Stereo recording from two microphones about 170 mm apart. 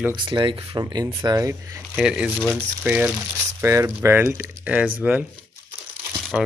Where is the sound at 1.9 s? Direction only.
5° right (ahead or behind).